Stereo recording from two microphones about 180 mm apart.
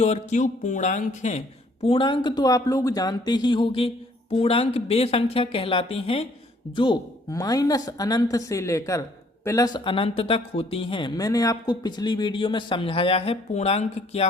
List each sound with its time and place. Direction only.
0.0 s speech: 40° left (ahead or behind)
1.8 s speech: 30° left (ahead or behind)